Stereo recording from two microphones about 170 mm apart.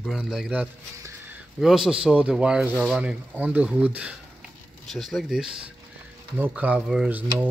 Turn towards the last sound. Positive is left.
turn(degrees=-5)  # may be behind; listen again after turning